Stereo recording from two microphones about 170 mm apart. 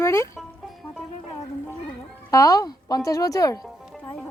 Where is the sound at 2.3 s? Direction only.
20° left (ahead or behind).